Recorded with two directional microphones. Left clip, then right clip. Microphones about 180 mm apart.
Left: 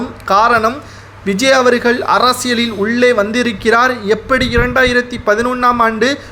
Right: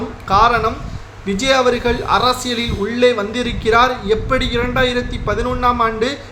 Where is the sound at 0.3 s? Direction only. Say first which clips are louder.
Left 3 dB; 40° left (ahead or behind).